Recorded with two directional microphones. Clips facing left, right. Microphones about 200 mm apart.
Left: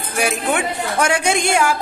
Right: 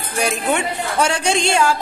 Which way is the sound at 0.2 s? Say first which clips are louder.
Even; 10° left (ahead or behind).